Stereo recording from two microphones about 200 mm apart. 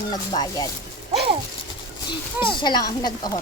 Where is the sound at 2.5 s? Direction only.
20° left (ahead or behind).